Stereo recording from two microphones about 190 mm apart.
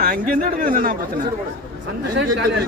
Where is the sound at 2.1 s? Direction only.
65° right (ahead or behind).